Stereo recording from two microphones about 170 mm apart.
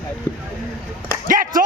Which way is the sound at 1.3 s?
50° right (ahead or behind).